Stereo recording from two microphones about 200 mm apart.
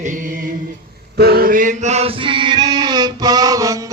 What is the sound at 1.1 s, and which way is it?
Male singing, 50° right (ahead or behind).